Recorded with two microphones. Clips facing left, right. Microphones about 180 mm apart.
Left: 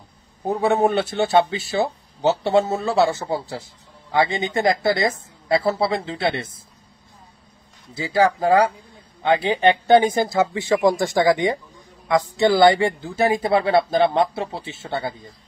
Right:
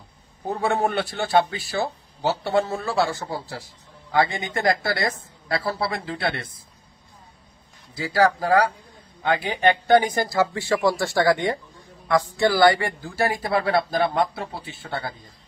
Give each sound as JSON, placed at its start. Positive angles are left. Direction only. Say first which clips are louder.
{"t": 0.5, "sound": "a man's voice", "louder": "left 5 dB", "side_deg": 15}
{"t": 7.9, "sound": "a man's voice", "louder": "left 1 dB", "side_deg": 20}